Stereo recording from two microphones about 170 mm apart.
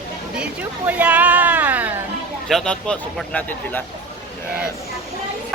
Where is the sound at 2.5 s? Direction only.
5° left (ahead or behind).